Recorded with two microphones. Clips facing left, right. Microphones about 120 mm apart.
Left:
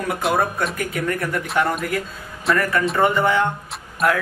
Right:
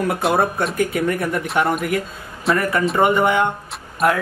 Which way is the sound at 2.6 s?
20° right (ahead or behind).